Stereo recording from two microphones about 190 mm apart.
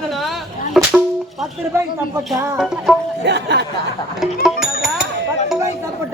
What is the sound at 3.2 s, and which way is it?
Speech, 65° right (ahead or behind).